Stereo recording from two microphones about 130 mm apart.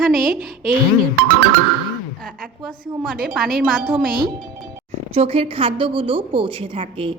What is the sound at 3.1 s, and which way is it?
Speech, centre (ahead or behind).